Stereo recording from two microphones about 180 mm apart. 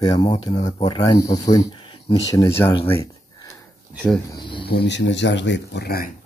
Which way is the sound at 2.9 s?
15° left (ahead or behind).